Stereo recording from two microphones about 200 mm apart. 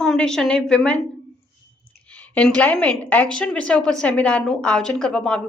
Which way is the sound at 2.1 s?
5° left (ahead or behind).